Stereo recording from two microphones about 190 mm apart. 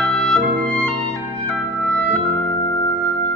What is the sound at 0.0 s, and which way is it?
Music, 5° left (ahead or behind).